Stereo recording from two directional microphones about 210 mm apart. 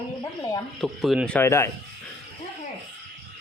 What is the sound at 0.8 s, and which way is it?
Speech, centre (ahead or behind).